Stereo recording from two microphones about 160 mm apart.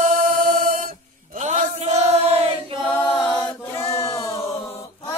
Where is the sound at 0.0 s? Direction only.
55° right (ahead or behind).